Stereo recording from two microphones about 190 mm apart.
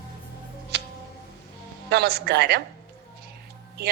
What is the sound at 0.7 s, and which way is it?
Tick, 60° right (ahead or behind).